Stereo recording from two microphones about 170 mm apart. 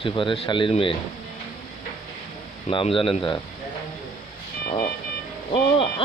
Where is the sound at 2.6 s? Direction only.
30° left (ahead or behind).